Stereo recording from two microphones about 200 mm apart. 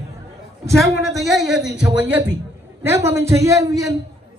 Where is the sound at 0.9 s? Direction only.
Centre (ahead or behind).